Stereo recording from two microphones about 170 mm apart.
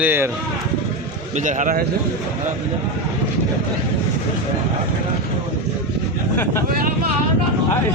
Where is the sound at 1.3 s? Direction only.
45° right (ahead or behind).